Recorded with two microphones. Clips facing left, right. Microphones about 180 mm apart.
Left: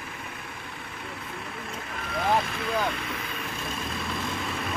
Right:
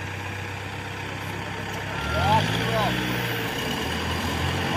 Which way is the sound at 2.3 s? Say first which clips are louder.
Right 1 dB; 85° right.